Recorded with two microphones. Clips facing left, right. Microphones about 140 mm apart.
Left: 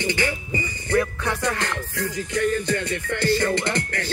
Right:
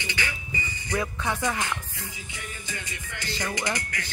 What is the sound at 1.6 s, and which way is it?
Music, 80° left.